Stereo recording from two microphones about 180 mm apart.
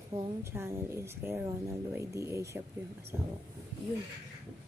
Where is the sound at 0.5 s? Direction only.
15° right (ahead or behind).